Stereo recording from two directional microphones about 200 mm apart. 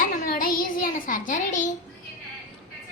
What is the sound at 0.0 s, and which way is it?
Child singing, 45° left (ahead or behind).